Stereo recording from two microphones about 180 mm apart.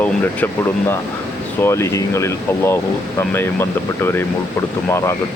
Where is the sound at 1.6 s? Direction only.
15° left (ahead or behind).